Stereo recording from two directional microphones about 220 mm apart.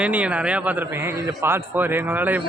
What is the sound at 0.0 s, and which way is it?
A man's voice, 5° right (ahead or behind).